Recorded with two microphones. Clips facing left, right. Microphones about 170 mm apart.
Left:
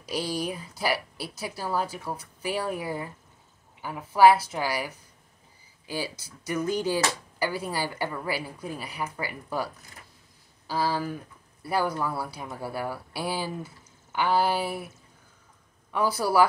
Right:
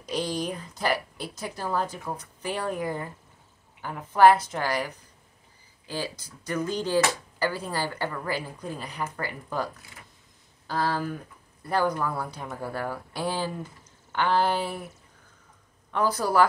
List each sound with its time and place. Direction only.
0.0 s speech: 5° left (ahead or behind)
6.2 s speech: 10° left (ahead or behind)
10.7 s speech: 5° left (ahead or behind)
15.9 s speech: 10° left (ahead or behind)